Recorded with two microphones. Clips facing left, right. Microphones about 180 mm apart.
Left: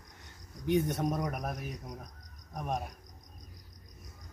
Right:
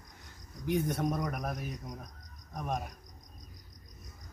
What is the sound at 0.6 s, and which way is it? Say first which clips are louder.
Speech: left 2 dB; centre (ahead or behind).